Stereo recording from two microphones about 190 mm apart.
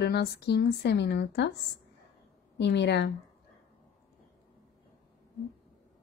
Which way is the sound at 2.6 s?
65° left (ahead or behind).